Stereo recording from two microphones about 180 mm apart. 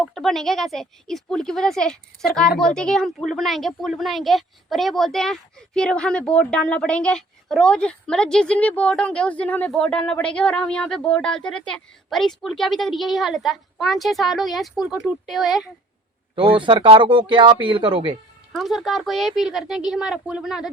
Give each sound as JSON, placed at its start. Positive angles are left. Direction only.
{"t": 0.0, "sound": "speech", "side_deg": 0}
{"t": 16.3, "sound": "speech", "side_deg": -30}
{"t": 18.5, "sound": "speech", "side_deg": 0}